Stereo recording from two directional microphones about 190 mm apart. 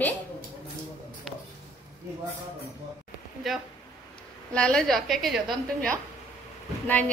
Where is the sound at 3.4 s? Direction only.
Centre (ahead or behind).